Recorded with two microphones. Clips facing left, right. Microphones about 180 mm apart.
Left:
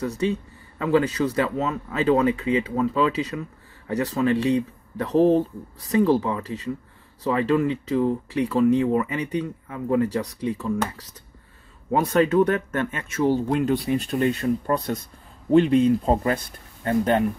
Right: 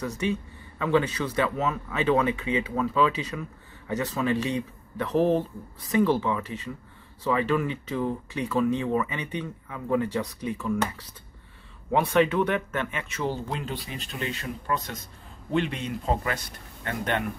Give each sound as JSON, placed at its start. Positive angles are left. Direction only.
{"t": 0.0, "sound": "speech", "side_deg": 35}
{"t": 2.7, "sound": "speech", "side_deg": 25}
{"t": 3.0, "sound": "speech", "side_deg": 35}
{"t": 11.9, "sound": "speech", "side_deg": 40}